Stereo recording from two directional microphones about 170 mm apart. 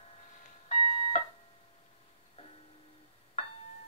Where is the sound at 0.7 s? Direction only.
35° left (ahead or behind).